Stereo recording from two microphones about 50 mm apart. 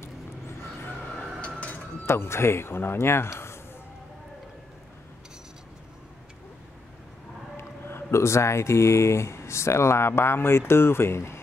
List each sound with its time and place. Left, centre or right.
2.0 s speech: left
7.5 s speech: left